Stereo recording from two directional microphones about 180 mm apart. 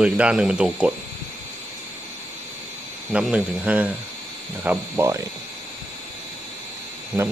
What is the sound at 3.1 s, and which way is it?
Speech, 5° right (ahead or behind).